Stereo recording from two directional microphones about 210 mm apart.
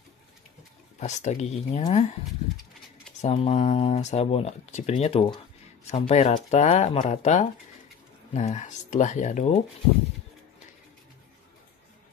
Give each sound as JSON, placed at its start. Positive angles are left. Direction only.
{"t": 0.9, "sound": "speech", "side_deg": 35}
{"t": 3.2, "sound": "speech", "side_deg": 30}